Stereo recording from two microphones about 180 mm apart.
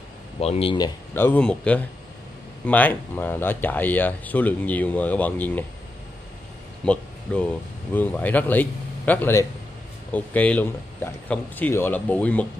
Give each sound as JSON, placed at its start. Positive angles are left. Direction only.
{"t": 0.4, "sound": "speech", "side_deg": 35}
{"t": 1.1, "sound": "speech", "side_deg": 10}
{"t": 6.8, "sound": "a sound", "side_deg": 5}
{"t": 7.9, "sound": "speech", "side_deg": 10}